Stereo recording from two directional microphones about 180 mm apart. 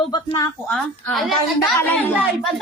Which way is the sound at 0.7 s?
5° left (ahead or behind).